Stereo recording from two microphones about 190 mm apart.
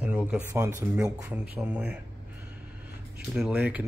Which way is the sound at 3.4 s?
5° right (ahead or behind).